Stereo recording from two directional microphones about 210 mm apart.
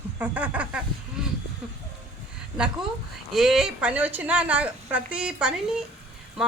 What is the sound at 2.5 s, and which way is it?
A man's voice, 5° right (ahead or behind).